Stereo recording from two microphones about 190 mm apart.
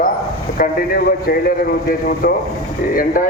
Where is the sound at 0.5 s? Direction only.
50° left (ahead or behind).